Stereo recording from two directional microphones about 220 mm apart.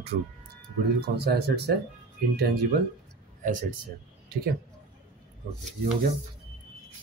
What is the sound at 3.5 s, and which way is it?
Speech, 35° right (ahead or behind).